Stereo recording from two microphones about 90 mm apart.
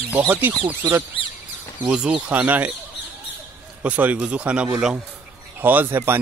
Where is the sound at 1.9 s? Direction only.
10° right (ahead or behind).